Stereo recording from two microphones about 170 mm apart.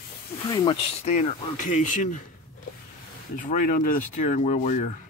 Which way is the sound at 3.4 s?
50° left (ahead or behind).